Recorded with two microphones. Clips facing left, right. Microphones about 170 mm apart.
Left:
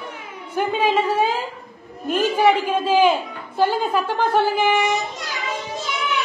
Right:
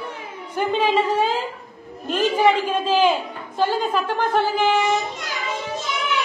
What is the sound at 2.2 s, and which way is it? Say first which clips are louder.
A man's voice: even; 10° left (ahead or behind).